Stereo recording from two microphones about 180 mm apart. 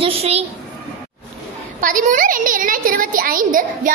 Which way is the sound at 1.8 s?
45° right (ahead or behind).